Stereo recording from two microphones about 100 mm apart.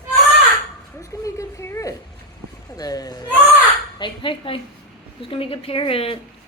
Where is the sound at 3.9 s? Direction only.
55° left (ahead or behind); by 6.1 s 75° left (ahead or behind).